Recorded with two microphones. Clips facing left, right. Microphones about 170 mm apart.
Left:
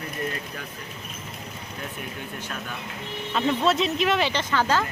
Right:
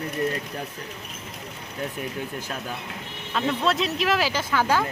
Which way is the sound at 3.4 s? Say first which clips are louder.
Left 1 dB; centre (ahead or behind).